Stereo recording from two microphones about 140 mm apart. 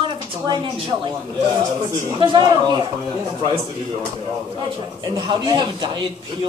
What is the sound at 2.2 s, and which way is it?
Speech, 35° right (ahead or behind).